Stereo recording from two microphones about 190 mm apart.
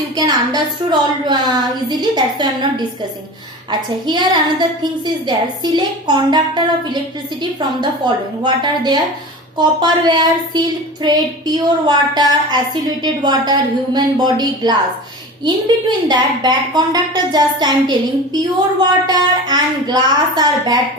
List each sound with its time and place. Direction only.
0.2 s a woman's voice: 20° right (ahead or behind)